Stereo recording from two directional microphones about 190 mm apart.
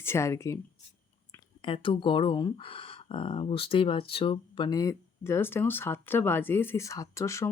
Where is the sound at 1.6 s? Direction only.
25° left (ahead or behind).